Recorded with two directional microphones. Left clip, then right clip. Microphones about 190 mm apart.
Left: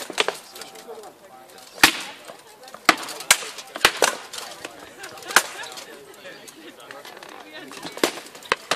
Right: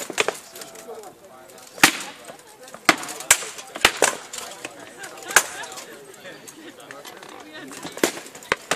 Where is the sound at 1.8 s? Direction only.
5° left (ahead or behind).